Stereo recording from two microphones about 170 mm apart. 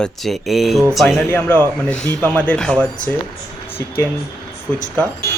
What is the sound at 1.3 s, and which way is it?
Speech, 15° left (ahead or behind).